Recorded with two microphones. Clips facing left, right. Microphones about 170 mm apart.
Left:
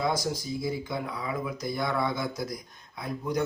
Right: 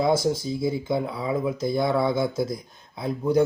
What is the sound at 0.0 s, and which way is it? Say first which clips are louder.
Speech: right 7 dB; 25° right (ahead or behind).